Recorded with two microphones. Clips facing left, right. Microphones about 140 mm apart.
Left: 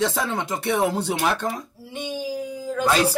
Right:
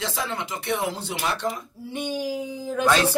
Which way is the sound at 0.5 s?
60° left (ahead or behind).